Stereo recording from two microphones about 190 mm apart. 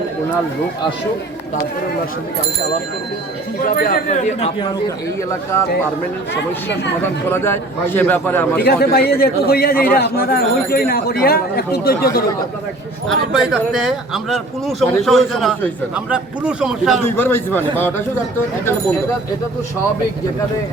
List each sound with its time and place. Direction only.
3.6 s speech: 45° left (ahead or behind)
6.3 s speech: 65° left (ahead or behind)
7.0 s a man's voice: 10° left (ahead or behind)
8.6 s a man's voice: 55° left (ahead or behind)
13.1 s speech: 5° right (ahead or behind)
17.0 s a man's voice: 10° left (ahead or behind)